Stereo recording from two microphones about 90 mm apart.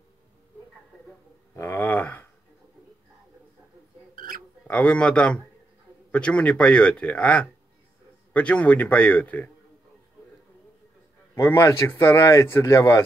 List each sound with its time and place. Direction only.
1.6 s a sound: 25° left (ahead or behind)
4.6 s speech: 15° left (ahead or behind)
11.3 s speech: 30° left (ahead or behind)